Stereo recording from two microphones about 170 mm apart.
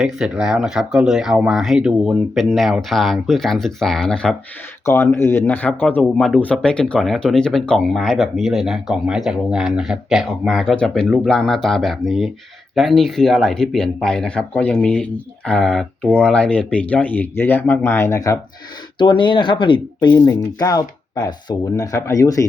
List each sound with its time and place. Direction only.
0.0 s speech: 5° right (ahead or behind)
4.9 s speech: 15° left (ahead or behind)
18.9 s speech: 30° left (ahead or behind)